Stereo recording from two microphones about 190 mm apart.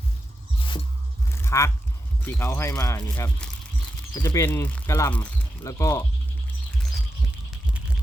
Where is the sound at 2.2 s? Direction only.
10° left (ahead or behind).